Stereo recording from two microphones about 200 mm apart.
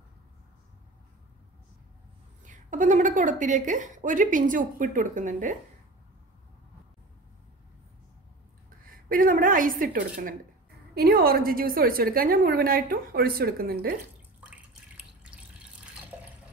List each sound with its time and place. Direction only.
2.4 s a woman's voice: 40° right (ahead or behind)
9.1 s a woman's voice: 45° right (ahead or behind)
15.2 s drip: 5° right (ahead or behind)